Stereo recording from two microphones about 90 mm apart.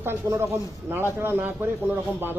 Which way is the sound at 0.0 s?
30° right (ahead or behind).